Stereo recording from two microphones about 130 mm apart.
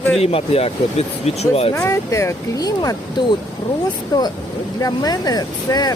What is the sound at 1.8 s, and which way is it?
Speech, 25° left (ahead or behind).